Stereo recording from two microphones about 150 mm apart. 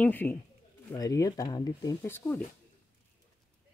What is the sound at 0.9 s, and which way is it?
Speech, 25° left (ahead or behind).